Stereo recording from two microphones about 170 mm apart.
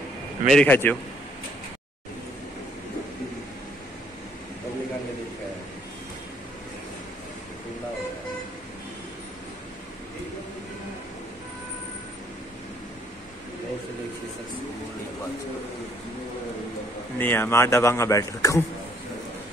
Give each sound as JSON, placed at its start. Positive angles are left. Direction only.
{"t": 0.5, "sound": "a man's voice", "side_deg": 10}
{"t": 17.2, "sound": "a man's voice", "side_deg": 10}